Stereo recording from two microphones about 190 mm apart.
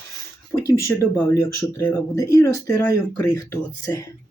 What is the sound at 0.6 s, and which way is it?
Speech, 15° left (ahead or behind).